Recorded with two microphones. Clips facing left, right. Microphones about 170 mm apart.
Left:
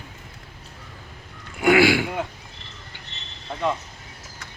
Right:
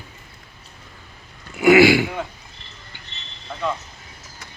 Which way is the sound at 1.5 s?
Centre (ahead or behind).